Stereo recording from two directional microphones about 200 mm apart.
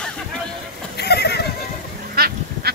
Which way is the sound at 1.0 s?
55° left (ahead or behind).